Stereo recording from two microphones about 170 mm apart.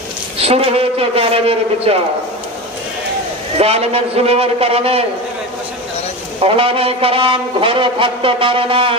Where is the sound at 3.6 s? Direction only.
35° right (ahead or behind).